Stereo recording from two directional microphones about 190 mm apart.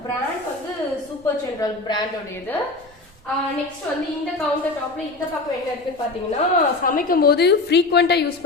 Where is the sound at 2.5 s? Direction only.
10° left (ahead or behind).